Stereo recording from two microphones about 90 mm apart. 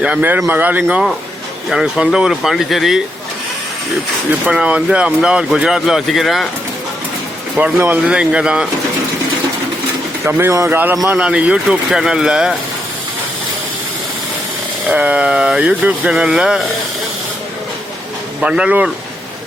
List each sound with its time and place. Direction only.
0.0 s speech: 15° right (ahead or behind)
1.7 s speech: 5° right (ahead or behind)
4.4 s speech: 10° right (ahead or behind)
7.6 s speech: 25° right (ahead or behind)
8.0 s speech: 10° right (ahead or behind)
10.2 s speech: 25° right (ahead or behind); by 12.5 s 10° right (ahead or behind)
14.8 s speech: 15° right (ahead or behind)
18.3 s speech: 10° right (ahead or behind)